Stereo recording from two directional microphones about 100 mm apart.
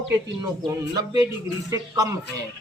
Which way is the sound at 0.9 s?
40° right (ahead or behind).